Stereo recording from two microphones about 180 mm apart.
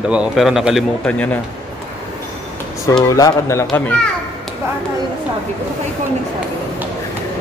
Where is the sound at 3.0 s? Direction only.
20° left (ahead or behind).